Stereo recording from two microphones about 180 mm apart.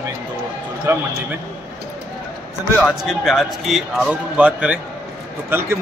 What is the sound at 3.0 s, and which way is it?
A man's voice, centre (ahead or behind).